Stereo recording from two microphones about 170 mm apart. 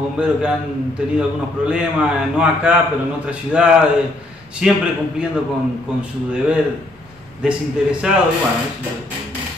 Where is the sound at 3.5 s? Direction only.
10° right (ahead or behind).